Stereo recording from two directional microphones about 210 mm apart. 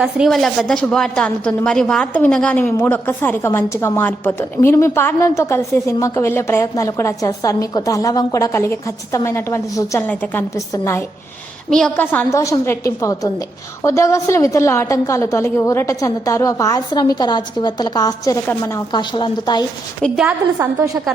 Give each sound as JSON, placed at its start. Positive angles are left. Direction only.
{"t": 0.0, "sound": "a woman's voice", "side_deg": 0}
{"t": 20.0, "sound": "a woman's voice", "side_deg": -5}
{"t": 20.6, "sound": "a woman's voice", "side_deg": -15}